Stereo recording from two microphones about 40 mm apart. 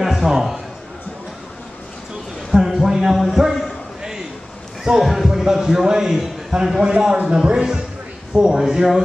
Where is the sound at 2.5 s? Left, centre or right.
Centre.